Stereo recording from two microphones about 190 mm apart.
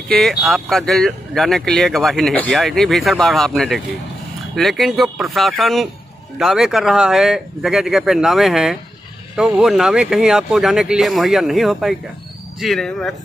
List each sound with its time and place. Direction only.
0.1 s speech: centre (ahead or behind)